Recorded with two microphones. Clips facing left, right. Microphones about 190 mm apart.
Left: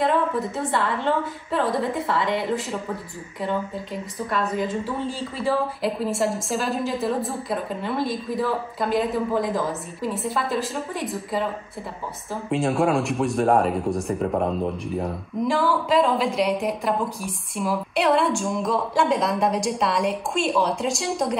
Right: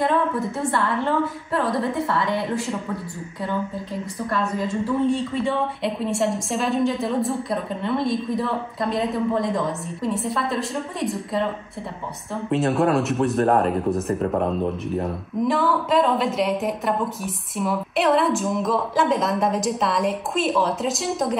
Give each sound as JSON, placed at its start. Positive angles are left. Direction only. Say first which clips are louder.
{"t": 0.7, "sound": "a woman's voice", "louder": "right 1 dB", "side_deg": 25}
{"t": 1.6, "sound": "speech", "louder": "right 1 dB", "side_deg": 0}
{"t": 2.1, "sound": "a woman's voice", "louder": "even", "side_deg": 25}
{"t": 4.4, "sound": "speech", "louder": "even", "side_deg": 0}